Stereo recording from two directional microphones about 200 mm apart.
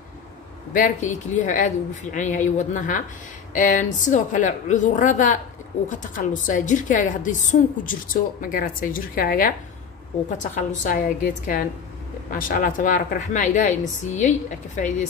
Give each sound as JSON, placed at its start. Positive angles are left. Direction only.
{"t": 0.7, "sound": "a woman's voice", "side_deg": 40}